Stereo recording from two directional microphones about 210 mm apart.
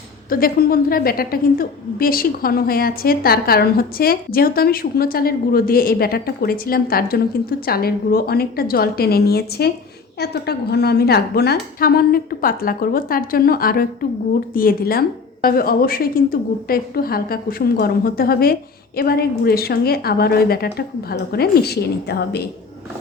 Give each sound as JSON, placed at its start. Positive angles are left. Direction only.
{"t": 0.3, "sound": "a woman's voice", "side_deg": 45}